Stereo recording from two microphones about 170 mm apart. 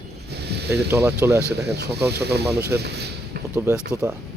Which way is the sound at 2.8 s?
75° right (ahead or behind).